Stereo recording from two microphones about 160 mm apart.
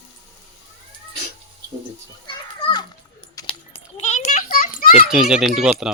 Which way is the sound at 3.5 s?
40° left (ahead or behind).